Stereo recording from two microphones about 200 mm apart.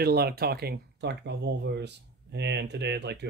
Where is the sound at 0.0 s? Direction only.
50° right (ahead or behind).